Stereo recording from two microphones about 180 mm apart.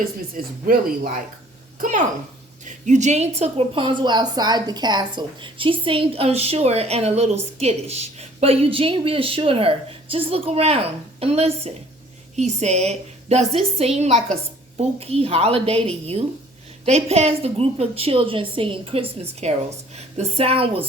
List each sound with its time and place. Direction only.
0.0 s a woman's voice: 50° right (ahead or behind); by 15.8 s 35° right (ahead or behind)
16.8 s a woman's voice: 35° right (ahead or behind)